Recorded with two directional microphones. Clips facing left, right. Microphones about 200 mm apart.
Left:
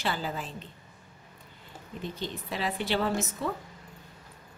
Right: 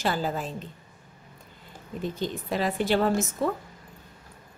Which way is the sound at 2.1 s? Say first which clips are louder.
Right 7 dB; 45° right (ahead or behind).